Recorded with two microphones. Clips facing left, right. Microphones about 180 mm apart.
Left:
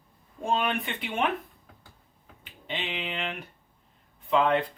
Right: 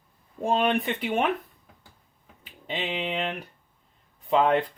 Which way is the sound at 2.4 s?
40° right (ahead or behind).